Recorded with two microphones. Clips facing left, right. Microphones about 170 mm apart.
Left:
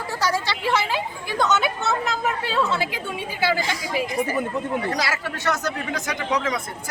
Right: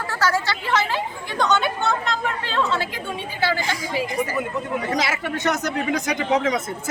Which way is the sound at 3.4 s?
15° left (ahead or behind).